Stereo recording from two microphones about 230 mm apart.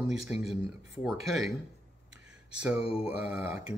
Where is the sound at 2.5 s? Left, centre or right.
Centre.